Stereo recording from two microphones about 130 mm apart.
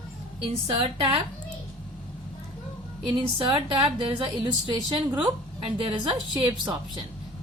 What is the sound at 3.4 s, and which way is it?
A woman's voice, 40° right (ahead or behind).